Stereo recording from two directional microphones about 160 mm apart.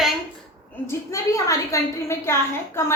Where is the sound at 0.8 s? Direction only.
20° left (ahead or behind).